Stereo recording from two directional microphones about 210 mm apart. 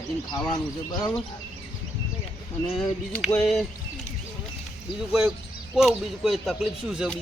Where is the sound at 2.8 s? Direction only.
5° left (ahead or behind).